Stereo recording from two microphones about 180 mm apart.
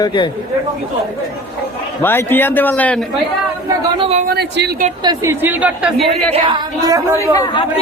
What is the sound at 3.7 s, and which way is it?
Chatter, 30° right (ahead or behind).